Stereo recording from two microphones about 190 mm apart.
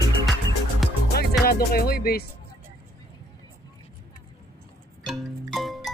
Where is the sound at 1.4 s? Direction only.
50° left (ahead or behind).